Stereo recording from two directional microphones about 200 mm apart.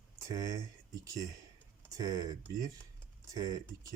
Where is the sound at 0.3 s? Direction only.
15° right (ahead or behind).